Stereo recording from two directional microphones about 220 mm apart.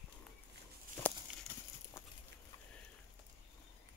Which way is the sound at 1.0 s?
10° left (ahead or behind).